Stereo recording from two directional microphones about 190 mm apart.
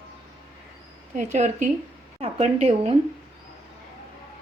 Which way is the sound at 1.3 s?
40° right (ahead or behind).